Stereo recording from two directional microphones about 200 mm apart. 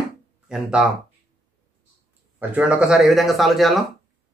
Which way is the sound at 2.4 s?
5° right (ahead or behind).